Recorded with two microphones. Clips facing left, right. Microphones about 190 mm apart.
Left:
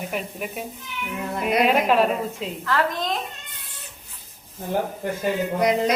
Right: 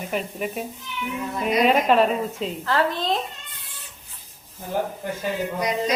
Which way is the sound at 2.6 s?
30° right (ahead or behind).